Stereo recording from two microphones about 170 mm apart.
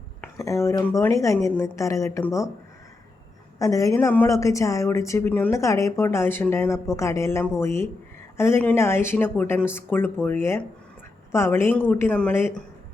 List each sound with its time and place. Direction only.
0.2 s a woman's voice: 15° left (ahead or behind)
3.6 s a woman's voice: 20° left (ahead or behind)